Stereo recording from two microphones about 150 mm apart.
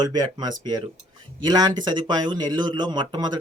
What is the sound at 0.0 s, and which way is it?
Speech, 25° right (ahead or behind).